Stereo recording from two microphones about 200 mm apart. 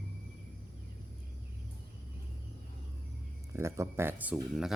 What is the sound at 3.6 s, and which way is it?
Speech, 15° right (ahead or behind).